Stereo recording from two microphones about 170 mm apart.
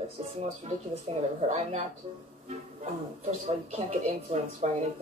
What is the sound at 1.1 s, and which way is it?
Speech, 40° right (ahead or behind).